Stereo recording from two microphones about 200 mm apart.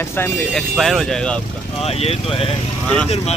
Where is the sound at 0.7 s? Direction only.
Centre (ahead or behind).